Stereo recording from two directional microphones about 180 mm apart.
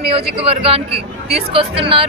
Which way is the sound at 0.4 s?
30° right (ahead or behind).